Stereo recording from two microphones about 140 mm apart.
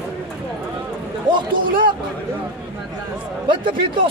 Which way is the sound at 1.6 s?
90° right.